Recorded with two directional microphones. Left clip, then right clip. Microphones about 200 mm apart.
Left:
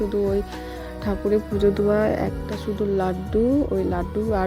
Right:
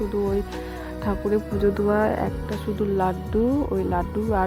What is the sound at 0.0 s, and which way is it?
Speech, centre (ahead or behind).